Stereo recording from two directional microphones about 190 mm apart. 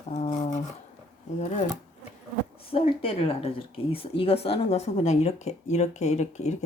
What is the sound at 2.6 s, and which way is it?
A woman's voice, 30° left (ahead or behind).